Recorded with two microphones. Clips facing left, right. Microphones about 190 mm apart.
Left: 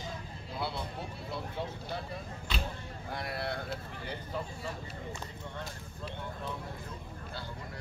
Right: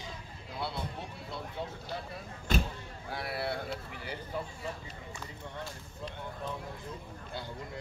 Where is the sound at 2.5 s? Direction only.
45° right (ahead or behind).